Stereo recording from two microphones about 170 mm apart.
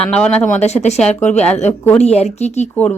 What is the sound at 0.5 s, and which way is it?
Speech, 40° left (ahead or behind).